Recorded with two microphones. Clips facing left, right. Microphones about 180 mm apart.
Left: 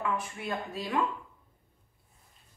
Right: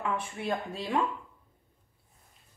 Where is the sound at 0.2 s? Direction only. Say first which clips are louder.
Right 3 dB; 30° right (ahead or behind).